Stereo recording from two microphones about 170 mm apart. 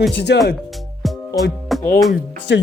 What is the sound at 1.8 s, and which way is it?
Speech, 10° left (ahead or behind).